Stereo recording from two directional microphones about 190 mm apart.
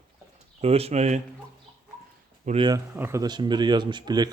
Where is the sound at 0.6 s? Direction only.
30° right (ahead or behind).